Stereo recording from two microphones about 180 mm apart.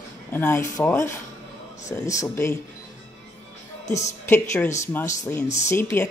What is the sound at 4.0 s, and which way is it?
Speech, 10° left (ahead or behind).